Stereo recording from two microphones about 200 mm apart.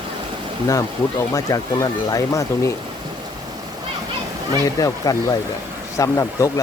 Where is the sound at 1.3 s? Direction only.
15° left (ahead or behind).